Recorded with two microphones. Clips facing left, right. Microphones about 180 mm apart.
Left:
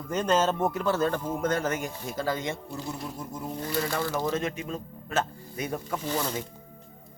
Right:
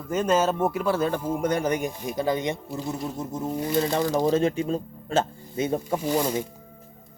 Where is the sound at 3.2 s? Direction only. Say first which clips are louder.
Right 6 dB; 20° right (ahead or behind).